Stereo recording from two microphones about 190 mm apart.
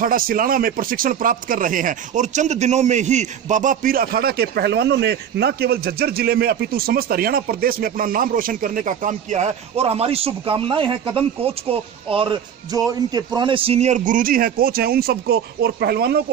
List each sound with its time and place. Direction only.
0.0 s speech: 45° right (ahead or behind)